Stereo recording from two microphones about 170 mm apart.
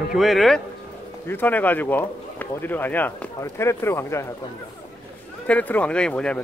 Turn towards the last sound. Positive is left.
turn(degrees=5)  # may be behind; listen again after turning